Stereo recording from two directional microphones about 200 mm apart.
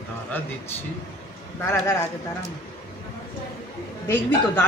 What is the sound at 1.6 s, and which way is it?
Speech, 15° left (ahead or behind).